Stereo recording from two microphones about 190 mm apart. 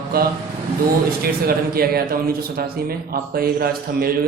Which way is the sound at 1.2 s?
55° right (ahead or behind).